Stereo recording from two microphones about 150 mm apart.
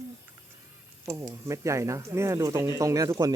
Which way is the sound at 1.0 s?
20° right (ahead or behind).